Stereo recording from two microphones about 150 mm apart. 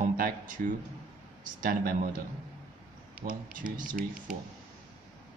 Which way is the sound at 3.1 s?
65° right (ahead or behind).